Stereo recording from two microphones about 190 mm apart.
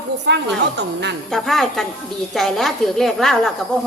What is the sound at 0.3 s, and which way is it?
Speech, 70° right (ahead or behind).